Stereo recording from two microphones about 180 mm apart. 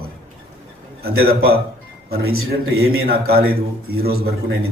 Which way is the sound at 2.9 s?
60° right (ahead or behind).